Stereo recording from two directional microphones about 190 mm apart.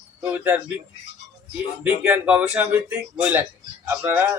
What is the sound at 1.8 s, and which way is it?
A man's voice, 10° right (ahead or behind).